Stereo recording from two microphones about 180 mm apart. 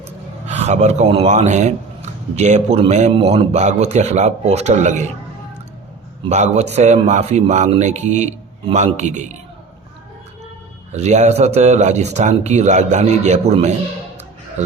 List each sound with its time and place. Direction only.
0.4 s a man's voice: 40° right (ahead or behind)
6.2 s a man's voice: 40° right (ahead or behind)
10.9 s a man's voice: 40° right (ahead or behind)